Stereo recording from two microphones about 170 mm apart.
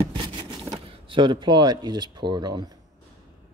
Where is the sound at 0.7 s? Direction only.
30° right (ahead or behind).